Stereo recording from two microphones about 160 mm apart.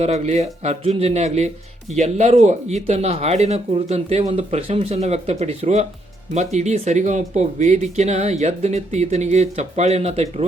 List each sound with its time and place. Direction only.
0.0 s speech: 45° right (ahead or behind)